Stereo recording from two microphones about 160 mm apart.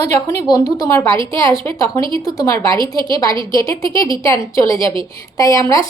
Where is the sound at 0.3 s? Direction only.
25° left (ahead or behind).